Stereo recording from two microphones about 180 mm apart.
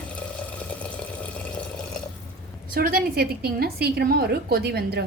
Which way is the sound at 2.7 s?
55° right (ahead or behind).